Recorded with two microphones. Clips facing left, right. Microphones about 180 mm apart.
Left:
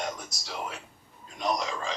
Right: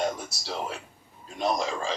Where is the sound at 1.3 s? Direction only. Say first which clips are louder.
Right 3 dB; 30° right (ahead or behind).